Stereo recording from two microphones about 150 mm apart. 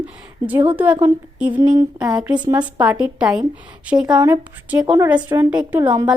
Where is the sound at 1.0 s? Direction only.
10° right (ahead or behind).